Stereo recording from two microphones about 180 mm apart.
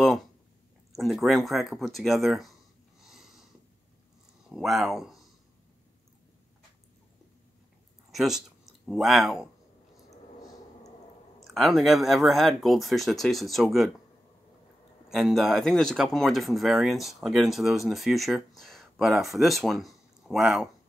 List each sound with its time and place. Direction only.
0.9 s speech: centre (ahead or behind)
3.0 s a sound: centre (ahead or behind)
4.5 s speech: centre (ahead or behind)
8.1 s speech: centre (ahead or behind)
10.0 s a sound: 20° left (ahead or behind)
11.3 s speech: centre (ahead or behind)
15.0 s speech: centre (ahead or behind)